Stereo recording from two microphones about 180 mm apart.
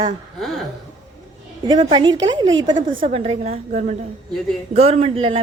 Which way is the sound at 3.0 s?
35° right (ahead or behind).